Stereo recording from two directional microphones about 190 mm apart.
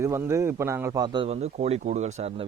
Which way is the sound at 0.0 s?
15° right (ahead or behind).